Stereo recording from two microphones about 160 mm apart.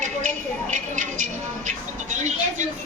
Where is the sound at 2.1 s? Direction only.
50° right (ahead or behind).